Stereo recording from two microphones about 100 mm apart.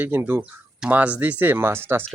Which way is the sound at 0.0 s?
20° right (ahead or behind).